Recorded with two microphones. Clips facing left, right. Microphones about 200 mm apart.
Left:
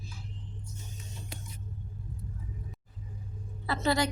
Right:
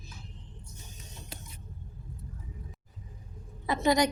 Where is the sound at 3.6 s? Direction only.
15° right (ahead or behind).